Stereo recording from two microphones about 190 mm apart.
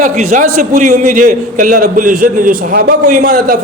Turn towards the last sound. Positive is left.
turn(degrees=-45)  # may be behind; listen again after turning